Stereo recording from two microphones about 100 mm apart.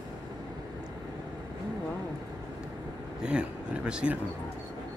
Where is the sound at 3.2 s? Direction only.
10° right (ahead or behind).